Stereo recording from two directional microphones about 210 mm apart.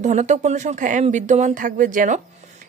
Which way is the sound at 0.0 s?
35° right (ahead or behind).